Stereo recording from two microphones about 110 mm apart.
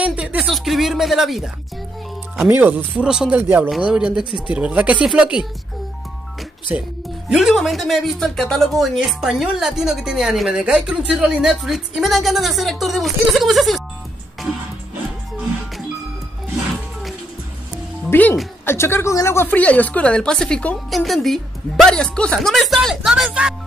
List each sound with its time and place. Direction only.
0.0 s a sound: 10° right (ahead or behind)
0.5 s music: centre (ahead or behind)
2.4 s speech: 15° right (ahead or behind)
6.7 s speech: 15° right (ahead or behind)
7.2 s speech: centre (ahead or behind)
18.1 s speech: 15° left (ahead or behind); by 23.5 s 5° right (ahead or behind)